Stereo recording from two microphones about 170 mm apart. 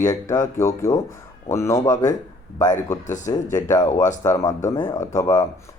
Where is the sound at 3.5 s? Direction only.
45° left (ahead or behind).